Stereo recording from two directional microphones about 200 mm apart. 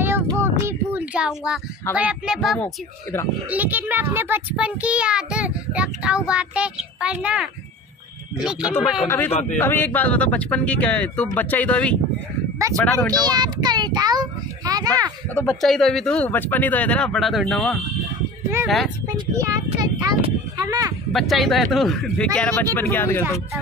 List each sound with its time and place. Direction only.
0.0 s a sound: 10° right (ahead or behind)
2.0 s a child's voice: 5° right (ahead or behind)
2.6 s speech: 10° left (ahead or behind)
3.4 s a child's voice: 10° right (ahead or behind)
9.0 s speech: 10° left (ahead or behind)
9.3 s a man's voice: 35° left (ahead or behind)
9.6 s speech: 10° left (ahead or behind)
13.2 s a child's voice: 20° right (ahead or behind)
15.4 s a child's voice: centre (ahead or behind)
19.3 s speech: 15° right (ahead or behind)
21.1 s a child's voice: centre (ahead or behind)